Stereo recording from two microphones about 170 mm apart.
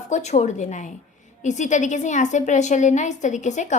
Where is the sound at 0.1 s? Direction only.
40° left (ahead or behind).